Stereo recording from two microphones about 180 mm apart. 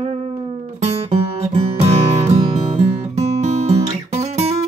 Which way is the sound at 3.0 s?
40° right (ahead or behind).